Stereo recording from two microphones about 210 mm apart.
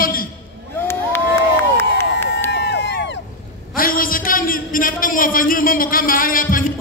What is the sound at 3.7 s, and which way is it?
A man's voice, 45° left (ahead or behind).